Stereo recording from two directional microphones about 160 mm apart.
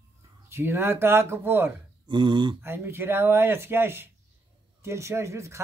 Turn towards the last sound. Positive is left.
turn(degrees=-20)  # may be behind; listen again after turning